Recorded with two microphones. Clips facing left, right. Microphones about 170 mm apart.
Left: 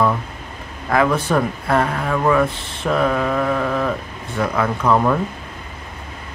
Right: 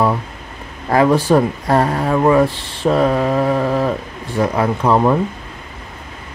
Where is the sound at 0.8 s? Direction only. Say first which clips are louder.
Right 4 dB; 35° right (ahead or behind).